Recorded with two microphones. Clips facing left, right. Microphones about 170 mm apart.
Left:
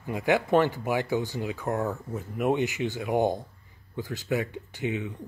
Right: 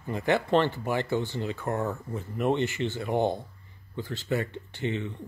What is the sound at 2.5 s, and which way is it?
Speech, 15° left (ahead or behind).